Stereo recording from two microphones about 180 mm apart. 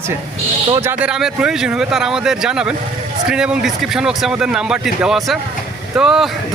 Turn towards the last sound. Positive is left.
turn(degrees=-5)  # may be behind; listen again after turning